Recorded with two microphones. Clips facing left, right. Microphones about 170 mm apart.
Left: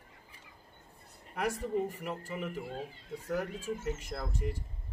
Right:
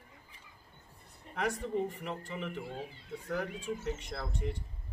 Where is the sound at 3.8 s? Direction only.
5° left (ahead or behind).